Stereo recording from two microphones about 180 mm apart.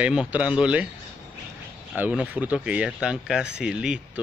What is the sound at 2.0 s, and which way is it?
Speech, 5° right (ahead or behind).